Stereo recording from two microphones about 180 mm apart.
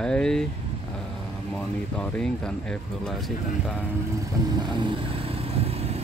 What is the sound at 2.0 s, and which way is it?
Speech, 5° left (ahead or behind).